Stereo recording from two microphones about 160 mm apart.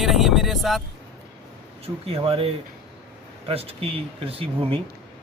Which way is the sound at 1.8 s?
40° right (ahead or behind).